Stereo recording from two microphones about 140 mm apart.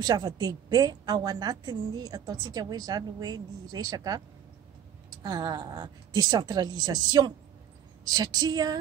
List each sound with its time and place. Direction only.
0.0 s a woman's voice: 30° right (ahead or behind)
5.2 s a woman's voice: 30° right (ahead or behind)